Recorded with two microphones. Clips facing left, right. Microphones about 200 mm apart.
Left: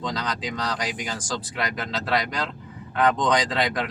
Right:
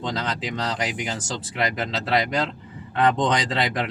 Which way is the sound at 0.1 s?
25° right (ahead or behind).